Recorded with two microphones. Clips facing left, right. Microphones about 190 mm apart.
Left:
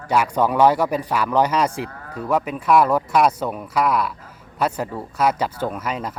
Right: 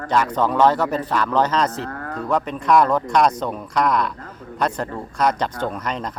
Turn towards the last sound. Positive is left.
turn(degrees=5)  # may be behind; listen again after turning